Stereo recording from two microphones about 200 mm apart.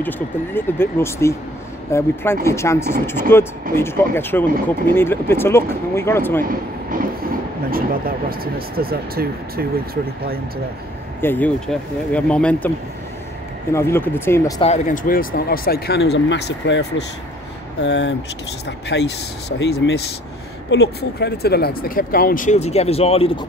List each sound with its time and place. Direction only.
0.6 s speech: 10° left (ahead or behind)
6.4 s vehicle: 45° right (ahead or behind)
7.7 s speech: 45° right (ahead or behind)
11.1 s speech: 10° left (ahead or behind)
13.7 s speech: 15° left (ahead or behind)
14.6 s speech: 35° left (ahead or behind)
15.0 s speech: 45° left (ahead or behind)
17.8 s speech: 60° left (ahead or behind); by 23.4 s 30° left (ahead or behind)